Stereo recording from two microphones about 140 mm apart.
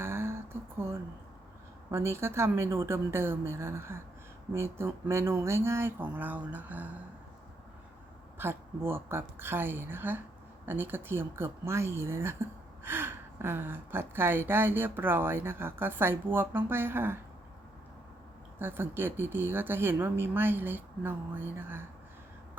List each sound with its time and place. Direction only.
0.0 s a sound: 15° right (ahead or behind)
1.9 s speech: 20° right (ahead or behind)
8.4 s speech: 15° right (ahead or behind)
18.6 s speech: 15° right (ahead or behind)